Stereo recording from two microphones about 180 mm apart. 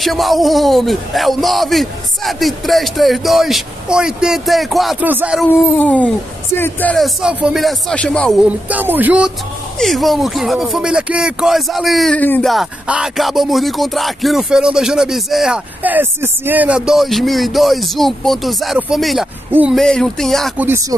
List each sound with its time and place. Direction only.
0.0 s speech: centre (ahead or behind)
5.8 s speech: 5° left (ahead or behind)
8.5 s speech: 10° right (ahead or behind)